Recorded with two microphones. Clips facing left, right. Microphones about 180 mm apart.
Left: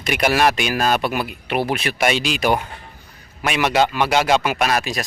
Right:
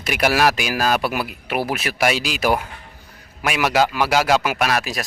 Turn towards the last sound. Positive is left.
turn(degrees=0)  # may be behind; listen again after turning